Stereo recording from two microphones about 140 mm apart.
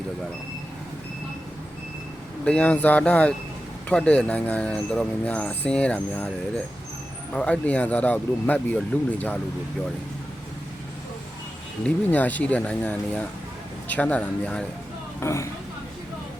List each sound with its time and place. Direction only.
2.4 s speech: 10° left (ahead or behind)
7.3 s speech: 10° left (ahead or behind)
12.1 s speech: 10° left (ahead or behind)
15.2 s speech: 20° left (ahead or behind)